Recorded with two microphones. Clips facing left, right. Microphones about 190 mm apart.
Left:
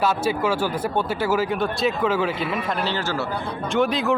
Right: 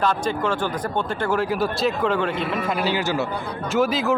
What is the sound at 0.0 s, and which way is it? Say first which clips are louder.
A man's voice: left 1 dB; 5° left (ahead or behind).